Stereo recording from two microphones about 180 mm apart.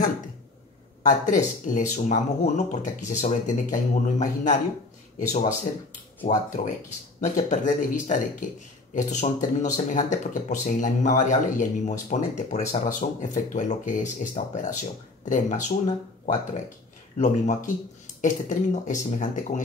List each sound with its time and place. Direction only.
1.0 s speech: 45° left (ahead or behind)
6.2 s speech: 40° left (ahead or behind)
17.2 s speech: 45° left (ahead or behind)